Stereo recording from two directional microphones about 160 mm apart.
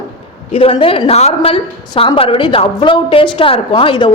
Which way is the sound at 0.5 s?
35° left (ahead or behind).